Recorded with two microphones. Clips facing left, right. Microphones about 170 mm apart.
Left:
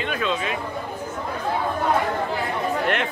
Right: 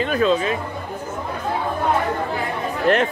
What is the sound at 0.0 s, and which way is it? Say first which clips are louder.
Speech: right 7 dB; 40° right (ahead or behind).